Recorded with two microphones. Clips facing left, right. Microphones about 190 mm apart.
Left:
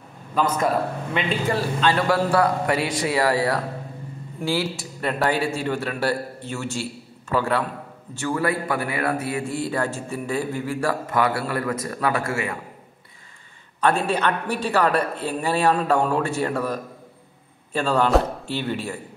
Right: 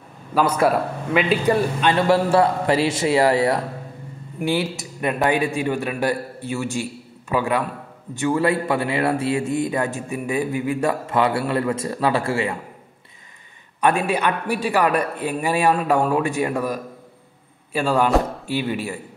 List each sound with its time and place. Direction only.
0.3 s a man's voice: 10° right (ahead or behind)
1.5 s a man's voice: 20° right (ahead or behind)
13.7 s a man's voice: 15° right (ahead or behind)